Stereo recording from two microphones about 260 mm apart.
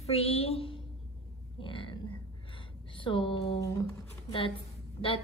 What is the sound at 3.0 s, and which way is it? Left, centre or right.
Speech, centre.